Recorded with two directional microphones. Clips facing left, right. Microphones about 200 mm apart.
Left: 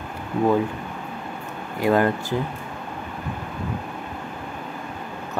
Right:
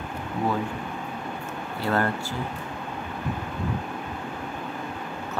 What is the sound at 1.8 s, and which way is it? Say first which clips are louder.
Speech: left 6 dB; 15° left (ahead or behind).